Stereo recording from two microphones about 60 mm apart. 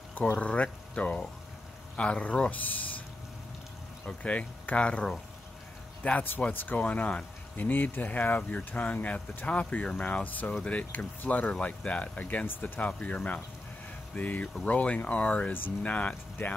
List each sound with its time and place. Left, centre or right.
0.1 s speech: left
4.0 s speech: left
6.0 s speech: left
6.8 s speech: left
7.5 s speech: left
10.2 s speech: left